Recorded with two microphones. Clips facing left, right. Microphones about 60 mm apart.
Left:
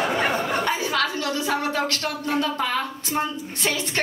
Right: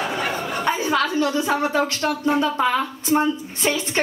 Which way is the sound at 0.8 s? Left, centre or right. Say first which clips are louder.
Right 4 dB; centre.